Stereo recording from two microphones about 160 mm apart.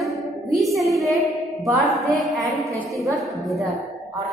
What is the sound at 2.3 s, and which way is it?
A woman's voice, centre (ahead or behind).